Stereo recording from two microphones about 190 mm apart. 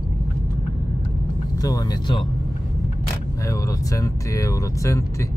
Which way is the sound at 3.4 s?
15° left (ahead or behind).